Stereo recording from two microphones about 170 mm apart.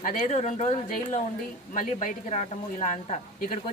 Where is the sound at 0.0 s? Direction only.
50° left (ahead or behind).